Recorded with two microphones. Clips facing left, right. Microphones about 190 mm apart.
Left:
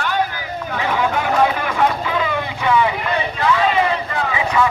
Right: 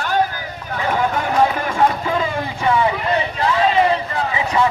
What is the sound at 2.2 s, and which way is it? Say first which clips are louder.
Vehicle: even; 35° right (ahead or behind).